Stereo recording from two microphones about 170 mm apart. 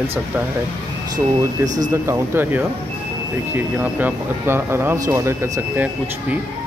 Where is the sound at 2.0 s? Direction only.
15° right (ahead or behind).